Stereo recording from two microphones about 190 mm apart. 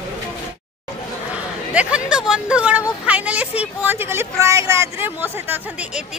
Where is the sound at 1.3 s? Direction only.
5° right (ahead or behind).